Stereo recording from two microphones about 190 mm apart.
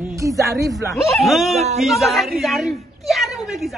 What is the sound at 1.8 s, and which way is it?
A woman's voice, centre (ahead or behind).